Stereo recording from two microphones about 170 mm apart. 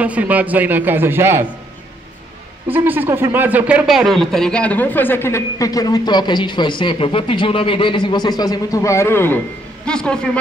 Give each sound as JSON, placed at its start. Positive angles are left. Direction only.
{"t": 0.0, "sound": "a man's voice", "side_deg": -10}
{"t": 2.7, "sound": "speech", "side_deg": -10}